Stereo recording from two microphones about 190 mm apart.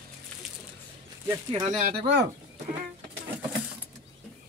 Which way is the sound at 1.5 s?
25° right (ahead or behind).